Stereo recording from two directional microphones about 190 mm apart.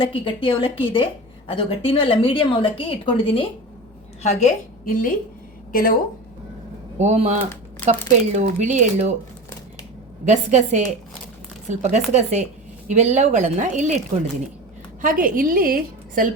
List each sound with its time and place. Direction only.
0.0 s a woman's voice: 30° left (ahead or behind); by 5.1 s 45° left (ahead or behind)
7.0 s speech: 35° right (ahead or behind)
10.2 s speech: 40° right (ahead or behind)
15.0 s a woman's voice: 45° right (ahead or behind)